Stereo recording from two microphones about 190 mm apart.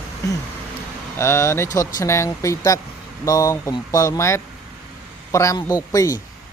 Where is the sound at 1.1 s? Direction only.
15° left (ahead or behind).